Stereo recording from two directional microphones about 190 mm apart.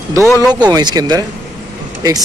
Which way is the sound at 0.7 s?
20° right (ahead or behind).